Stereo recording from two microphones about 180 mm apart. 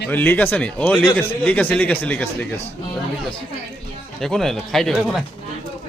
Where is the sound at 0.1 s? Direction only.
10° left (ahead or behind).